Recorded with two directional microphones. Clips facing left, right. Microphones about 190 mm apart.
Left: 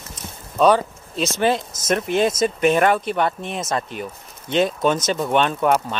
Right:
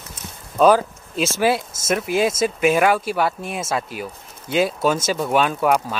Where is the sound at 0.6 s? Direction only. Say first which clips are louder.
Right 1 dB; 5° right (ahead or behind).